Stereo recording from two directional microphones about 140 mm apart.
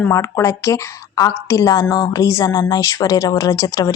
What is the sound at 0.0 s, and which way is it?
A woman's voice, 20° left (ahead or behind).